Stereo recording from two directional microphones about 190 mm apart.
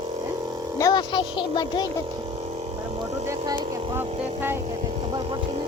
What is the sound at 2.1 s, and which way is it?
Vehicle, 25° right (ahead or behind).